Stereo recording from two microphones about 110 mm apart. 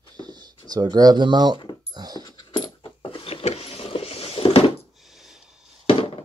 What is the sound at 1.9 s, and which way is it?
Dog, 35° right (ahead or behind).